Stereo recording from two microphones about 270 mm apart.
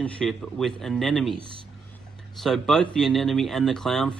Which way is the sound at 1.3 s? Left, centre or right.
Centre.